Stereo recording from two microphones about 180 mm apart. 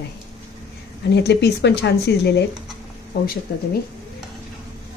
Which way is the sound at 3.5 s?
55° left (ahead or behind).